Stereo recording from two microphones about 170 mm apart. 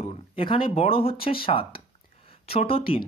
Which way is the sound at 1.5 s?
35° left (ahead or behind).